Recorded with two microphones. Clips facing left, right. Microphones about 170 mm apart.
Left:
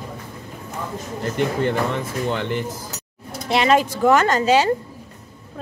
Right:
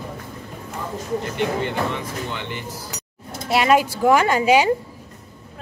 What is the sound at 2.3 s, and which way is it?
Speech, 45° left (ahead or behind).